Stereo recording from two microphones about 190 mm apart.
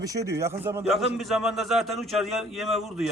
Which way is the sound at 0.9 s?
Centre (ahead or behind).